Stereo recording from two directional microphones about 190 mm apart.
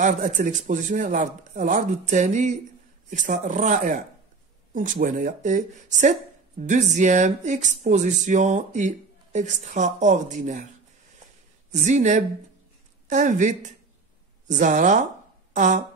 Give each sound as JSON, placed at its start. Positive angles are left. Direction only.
{"t": 0.0, "sound": "speech", "side_deg": -40}
{"t": 11.7, "sound": "speech", "side_deg": -40}